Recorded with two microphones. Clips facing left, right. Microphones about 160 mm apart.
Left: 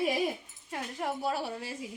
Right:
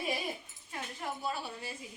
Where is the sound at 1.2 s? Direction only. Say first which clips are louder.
Left 5 dB; 85° left.